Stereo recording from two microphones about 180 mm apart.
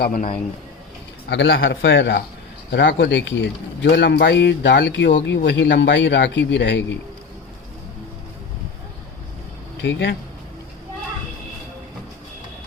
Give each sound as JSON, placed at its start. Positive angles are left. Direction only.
{"t": 0.0, "sound": "a man's voice", "side_deg": 50}
{"t": 1.3, "sound": "a man's voice", "side_deg": 80}
{"t": 9.8, "sound": "speech", "side_deg": 80}